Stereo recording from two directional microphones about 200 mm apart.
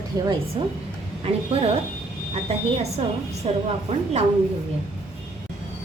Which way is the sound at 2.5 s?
30° right (ahead or behind).